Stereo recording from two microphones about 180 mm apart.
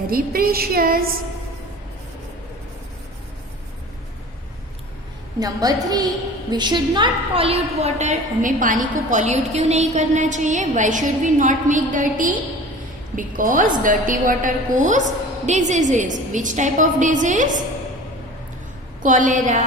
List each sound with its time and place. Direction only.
0.1 s child singing: 55° right (ahead or behind)
5.4 s a woman's voice: 20° right (ahead or behind); by 17.6 s 45° right (ahead or behind)
19.0 s a woman's voice: 45° right (ahead or behind)